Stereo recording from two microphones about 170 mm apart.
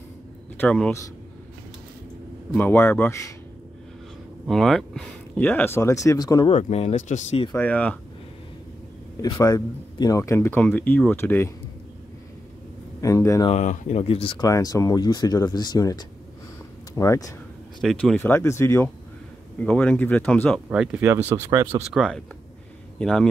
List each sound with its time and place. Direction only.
0.6 s speech: 5° left (ahead or behind)
2.5 s speech: 15° left (ahead or behind)
4.5 s speech: centre (ahead or behind); by 6.5 s 25° left (ahead or behind)
6.5 s speech: 40° left (ahead or behind)
7.5 s speech: 10° left (ahead or behind)
9.2 s speech: 20° left (ahead or behind)
13.0 s speech: 20° left (ahead or behind)
13.5 s speech: 45° left (ahead or behind)
14.5 s speech: 20° left (ahead or behind)
17.8 s speech: 5° left (ahead or behind)
20.7 s speech: 5° right (ahead or behind)
21.9 s a man's voice: 5° left (ahead or behind)